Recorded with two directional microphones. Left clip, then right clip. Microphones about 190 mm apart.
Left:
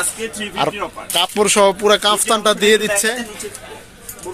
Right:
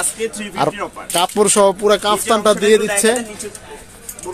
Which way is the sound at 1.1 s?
30° right (ahead or behind).